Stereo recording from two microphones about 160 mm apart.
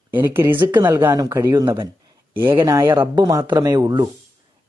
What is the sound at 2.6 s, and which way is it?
Speech, 25° right (ahead or behind).